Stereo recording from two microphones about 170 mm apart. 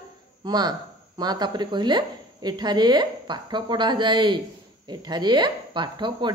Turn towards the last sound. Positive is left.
turn(degrees=-25)  # may be behind; listen again after turning